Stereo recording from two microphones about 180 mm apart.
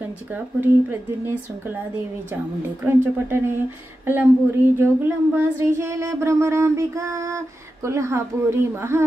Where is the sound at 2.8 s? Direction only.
10° right (ahead or behind).